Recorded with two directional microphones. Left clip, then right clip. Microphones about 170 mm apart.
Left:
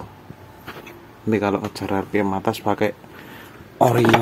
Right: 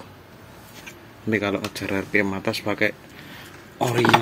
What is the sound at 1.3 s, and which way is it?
Speech, 20° left (ahead or behind).